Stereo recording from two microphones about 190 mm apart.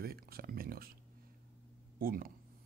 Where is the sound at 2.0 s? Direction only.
50° right (ahead or behind).